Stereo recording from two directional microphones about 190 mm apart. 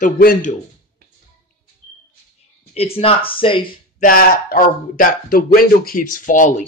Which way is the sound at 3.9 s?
45° left (ahead or behind).